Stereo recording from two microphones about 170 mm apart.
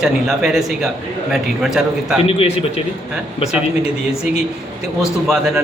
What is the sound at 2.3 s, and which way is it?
Speech, 35° left (ahead or behind).